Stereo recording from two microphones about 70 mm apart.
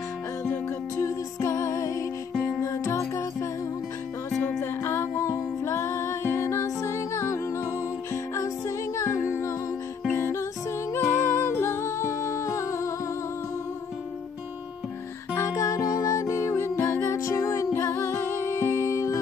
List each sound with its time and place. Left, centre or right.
0.9 s music: left
4.6 s music: left
15.3 s music: left
17.7 s music: left